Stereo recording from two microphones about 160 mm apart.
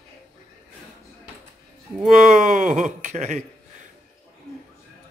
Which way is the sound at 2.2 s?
55° right (ahead or behind).